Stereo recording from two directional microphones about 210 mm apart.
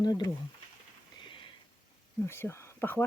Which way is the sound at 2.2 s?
10° left (ahead or behind).